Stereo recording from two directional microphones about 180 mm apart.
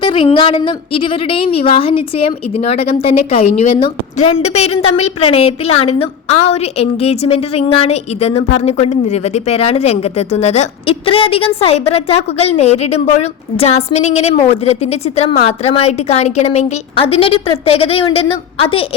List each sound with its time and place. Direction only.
0.0 s speech: 30° left (ahead or behind)